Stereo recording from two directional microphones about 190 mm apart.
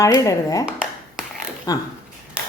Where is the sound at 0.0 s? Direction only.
15° left (ahead or behind).